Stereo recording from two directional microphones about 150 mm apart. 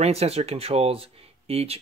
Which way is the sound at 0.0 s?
45° right (ahead or behind).